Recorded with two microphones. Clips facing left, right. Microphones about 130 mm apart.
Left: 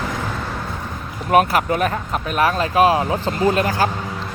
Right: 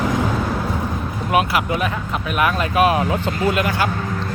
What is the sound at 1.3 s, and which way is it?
Speech, 40° left (ahead or behind).